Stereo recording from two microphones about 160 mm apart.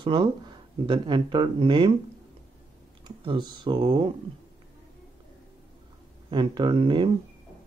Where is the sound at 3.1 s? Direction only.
30° right (ahead or behind).